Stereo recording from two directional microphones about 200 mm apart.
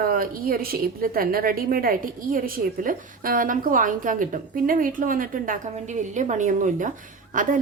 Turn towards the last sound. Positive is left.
turn(degrees=-40)  # may be behind; listen again after turning